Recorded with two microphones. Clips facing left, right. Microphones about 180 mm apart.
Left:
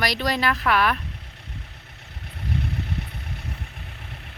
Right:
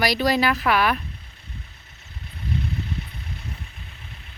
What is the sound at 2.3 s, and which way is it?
Vehicle, 65° left (ahead or behind).